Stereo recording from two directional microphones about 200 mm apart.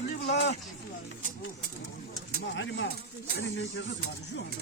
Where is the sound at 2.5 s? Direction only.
65° left (ahead or behind).